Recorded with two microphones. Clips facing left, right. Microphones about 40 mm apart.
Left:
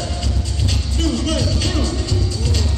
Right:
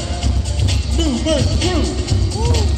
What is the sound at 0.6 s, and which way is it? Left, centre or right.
Music, right.